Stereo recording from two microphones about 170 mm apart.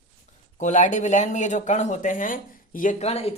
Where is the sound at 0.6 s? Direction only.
45° left (ahead or behind).